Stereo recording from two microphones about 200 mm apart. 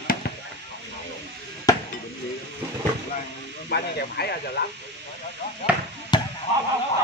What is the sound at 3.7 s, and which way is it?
Speech, 55° left (ahead or behind).